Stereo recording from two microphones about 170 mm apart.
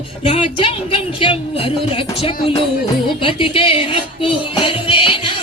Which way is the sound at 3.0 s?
30° left (ahead or behind).